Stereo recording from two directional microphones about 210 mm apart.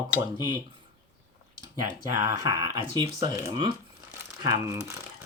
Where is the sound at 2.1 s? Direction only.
15° right (ahead or behind).